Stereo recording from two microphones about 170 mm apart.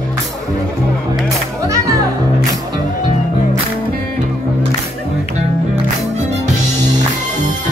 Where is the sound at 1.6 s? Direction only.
20° right (ahead or behind).